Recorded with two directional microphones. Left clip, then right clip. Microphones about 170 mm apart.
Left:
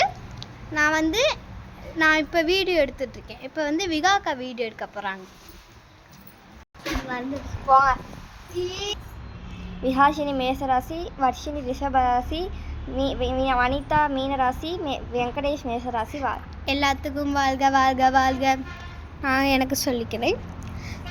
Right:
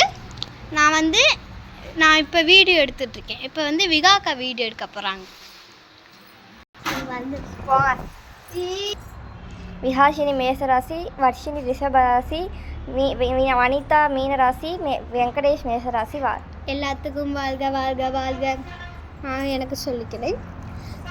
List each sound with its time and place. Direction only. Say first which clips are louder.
0.0 s a sound: right 4 dB; 20° left (ahead or behind)
2.0 s a woman's voice: right 4 dB; 20° left (ahead or behind)
7.7 s a woman's voice: left 1 dB; 20° left (ahead or behind)
9.8 s speech: right 3 dB; centre (ahead or behind)
16.6 s a woman's voice: left 3 dB; 90° left; by 20.3 s 55° left (ahead or behind)